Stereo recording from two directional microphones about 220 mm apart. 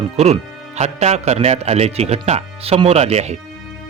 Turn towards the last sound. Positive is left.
turn(degrees=-30)  # may be behind; listen again after turning